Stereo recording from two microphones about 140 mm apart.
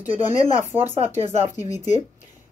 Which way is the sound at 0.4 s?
60° left (ahead or behind).